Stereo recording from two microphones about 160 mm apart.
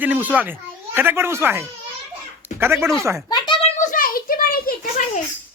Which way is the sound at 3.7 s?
55° left (ahead or behind).